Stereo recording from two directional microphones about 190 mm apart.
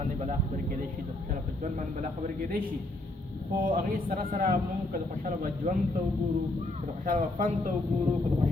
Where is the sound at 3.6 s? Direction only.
50° right (ahead or behind).